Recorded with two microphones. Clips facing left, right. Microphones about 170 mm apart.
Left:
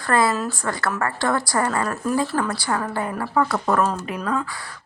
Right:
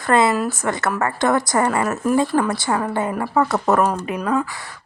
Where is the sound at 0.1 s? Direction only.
20° right (ahead or behind).